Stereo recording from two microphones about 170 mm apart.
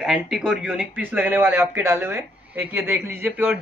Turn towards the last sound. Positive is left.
turn(degrees=-10)  # may be behind; listen again after turning